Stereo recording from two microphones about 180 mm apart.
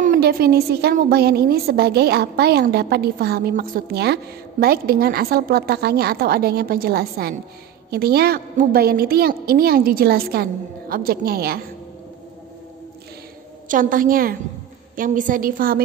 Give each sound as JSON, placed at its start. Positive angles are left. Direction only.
{"t": 0.0, "sound": "a woman's voice", "side_deg": -50}
{"t": 13.7, "sound": "a woman's voice", "side_deg": -50}